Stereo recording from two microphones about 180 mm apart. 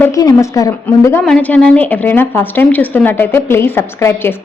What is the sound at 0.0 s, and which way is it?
A woman's voice, 20° left (ahead or behind).